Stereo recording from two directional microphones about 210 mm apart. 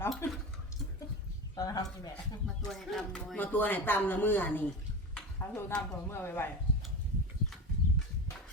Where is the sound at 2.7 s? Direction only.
Centre (ahead or behind).